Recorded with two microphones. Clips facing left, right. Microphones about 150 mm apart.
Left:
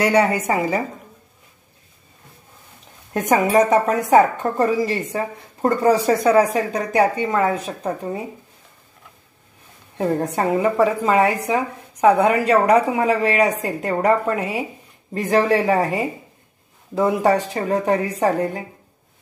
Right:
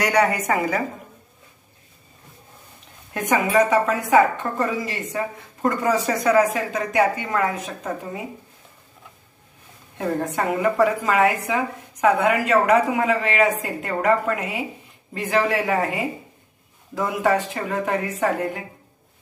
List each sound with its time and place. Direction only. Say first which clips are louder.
0.0 s a woman's voice: left 3 dB; 30° left (ahead or behind)
3.1 s a woman's voice: left 4 dB; 40° left (ahead or behind)
9.9 s a woman's voice: left 3 dB; 35° left (ahead or behind)